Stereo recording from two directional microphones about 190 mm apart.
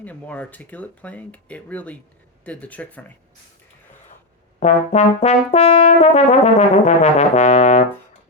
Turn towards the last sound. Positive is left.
turn(degrees=40)  # may be behind; listen again after turning